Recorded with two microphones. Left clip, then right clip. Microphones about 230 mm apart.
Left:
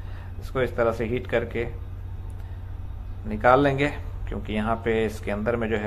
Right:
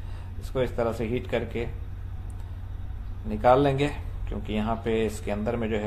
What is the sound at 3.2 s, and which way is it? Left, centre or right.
Speech, centre.